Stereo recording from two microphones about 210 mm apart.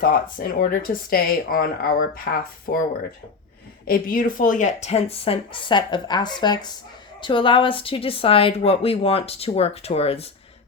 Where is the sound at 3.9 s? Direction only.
45° left (ahead or behind).